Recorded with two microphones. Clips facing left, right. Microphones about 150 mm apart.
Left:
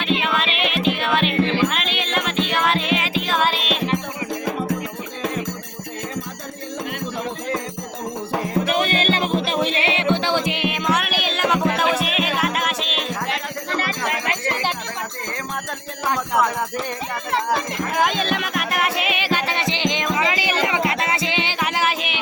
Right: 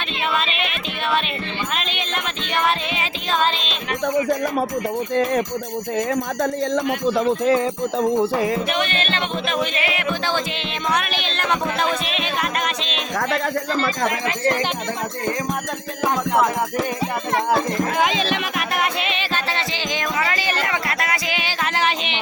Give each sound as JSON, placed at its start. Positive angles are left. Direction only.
{"t": 0.1, "sound": "music", "side_deg": 0}
{"t": 6.4, "sound": "music", "side_deg": -90}
{"t": 8.7, "sound": "music", "side_deg": 40}
{"t": 18.0, "sound": "music", "side_deg": 0}
{"t": 21.6, "sound": "music", "side_deg": 5}